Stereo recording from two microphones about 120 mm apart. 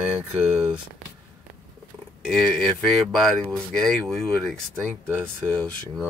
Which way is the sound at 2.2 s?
Centre (ahead or behind).